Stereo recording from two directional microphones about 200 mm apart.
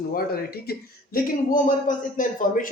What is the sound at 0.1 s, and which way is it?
Speech, 50° left (ahead or behind).